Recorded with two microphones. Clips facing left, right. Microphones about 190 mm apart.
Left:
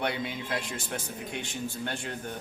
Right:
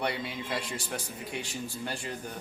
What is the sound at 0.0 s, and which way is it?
A man's voice, centre (ahead or behind).